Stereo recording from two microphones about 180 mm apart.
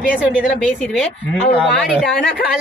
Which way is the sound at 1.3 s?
5° left (ahead or behind).